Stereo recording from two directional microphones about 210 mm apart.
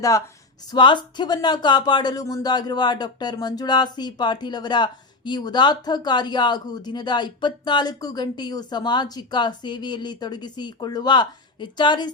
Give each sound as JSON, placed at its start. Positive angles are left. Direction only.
{"t": 0.7, "sound": "speech", "side_deg": 20}